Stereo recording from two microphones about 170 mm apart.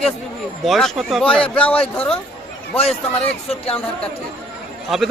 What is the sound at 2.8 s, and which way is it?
Speech, 35° left (ahead or behind).